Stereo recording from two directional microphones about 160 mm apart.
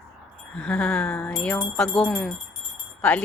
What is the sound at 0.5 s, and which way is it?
Jingle bell, 5° left (ahead or behind).